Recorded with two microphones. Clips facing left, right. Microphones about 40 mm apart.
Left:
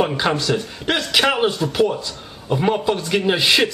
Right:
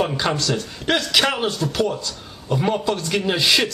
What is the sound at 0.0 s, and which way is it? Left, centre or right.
Speech, centre.